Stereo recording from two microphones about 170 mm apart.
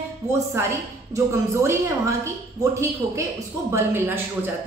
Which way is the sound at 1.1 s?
15° right (ahead or behind).